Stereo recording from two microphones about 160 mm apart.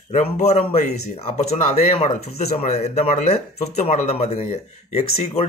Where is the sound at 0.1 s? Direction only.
45° left (ahead or behind).